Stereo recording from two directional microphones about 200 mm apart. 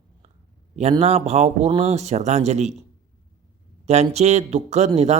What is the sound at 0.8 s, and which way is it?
Speech, 30° right (ahead or behind).